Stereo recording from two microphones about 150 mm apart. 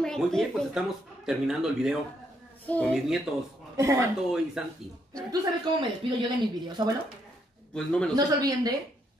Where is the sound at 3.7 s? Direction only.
20° right (ahead or behind).